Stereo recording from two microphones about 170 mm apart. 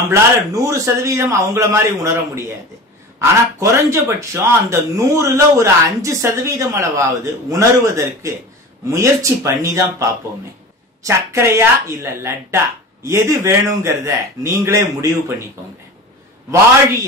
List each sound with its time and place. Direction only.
0.1 s speech: 20° right (ahead or behind)